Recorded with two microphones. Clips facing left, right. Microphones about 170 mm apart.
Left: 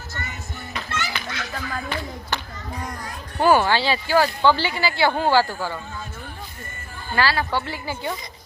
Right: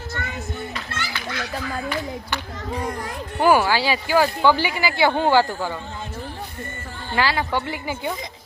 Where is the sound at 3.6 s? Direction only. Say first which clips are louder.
Even; 10° right (ahead or behind).